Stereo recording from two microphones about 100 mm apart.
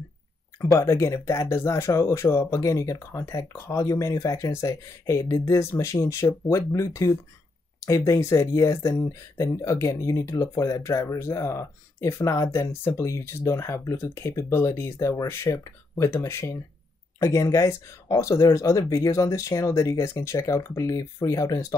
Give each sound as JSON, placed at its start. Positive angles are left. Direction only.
{"t": 0.7, "sound": "speech", "side_deg": 30}